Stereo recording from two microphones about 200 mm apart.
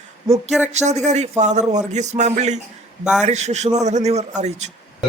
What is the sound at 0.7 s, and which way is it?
Speech, 35° right (ahead or behind).